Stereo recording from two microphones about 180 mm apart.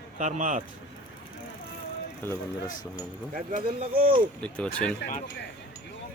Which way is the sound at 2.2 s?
10° left (ahead or behind).